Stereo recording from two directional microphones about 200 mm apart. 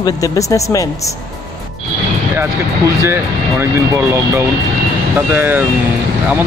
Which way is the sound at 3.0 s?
10° right (ahead or behind).